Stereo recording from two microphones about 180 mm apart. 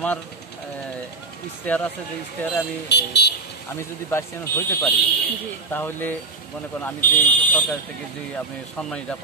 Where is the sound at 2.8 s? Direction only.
70° left (ahead or behind).